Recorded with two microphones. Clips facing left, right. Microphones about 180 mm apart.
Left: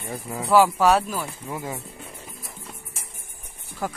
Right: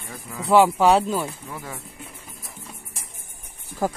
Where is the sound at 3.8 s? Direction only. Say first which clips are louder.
Right 5 dB; 35° right (ahead or behind).